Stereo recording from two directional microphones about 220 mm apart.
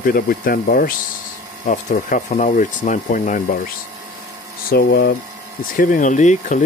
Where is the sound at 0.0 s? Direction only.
40° left (ahead or behind).